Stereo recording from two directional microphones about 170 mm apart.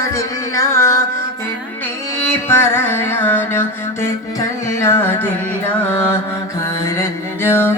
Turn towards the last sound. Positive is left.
turn(degrees=15)  # may be behind; listen again after turning